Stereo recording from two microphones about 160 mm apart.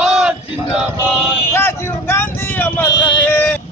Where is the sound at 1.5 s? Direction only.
15° left (ahead or behind).